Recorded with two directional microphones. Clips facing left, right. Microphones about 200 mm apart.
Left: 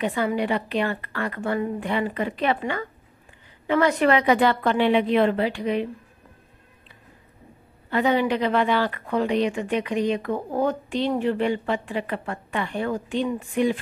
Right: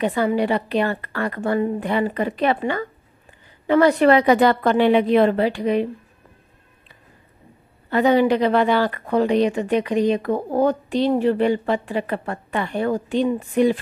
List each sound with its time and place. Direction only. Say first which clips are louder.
0.0 s speech: right 4 dB; 40° right (ahead or behind)
7.9 s speech: right 5 dB; 40° right (ahead or behind)